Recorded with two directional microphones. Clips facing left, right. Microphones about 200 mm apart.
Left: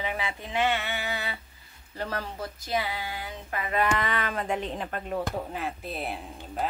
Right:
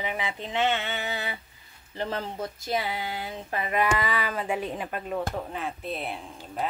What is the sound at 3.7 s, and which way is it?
Speech, 5° right (ahead or behind).